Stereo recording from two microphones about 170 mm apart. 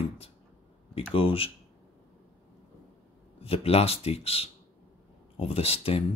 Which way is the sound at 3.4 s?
35° left (ahead or behind).